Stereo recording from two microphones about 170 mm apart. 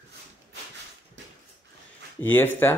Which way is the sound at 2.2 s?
10° left (ahead or behind).